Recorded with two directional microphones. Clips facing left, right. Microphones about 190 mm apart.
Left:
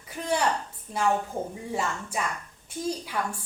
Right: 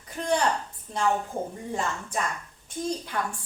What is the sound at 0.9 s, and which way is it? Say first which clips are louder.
Speech: even; 5° left (ahead or behind).